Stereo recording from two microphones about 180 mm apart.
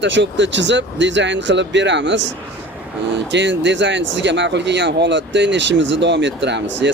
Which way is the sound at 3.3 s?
80° right.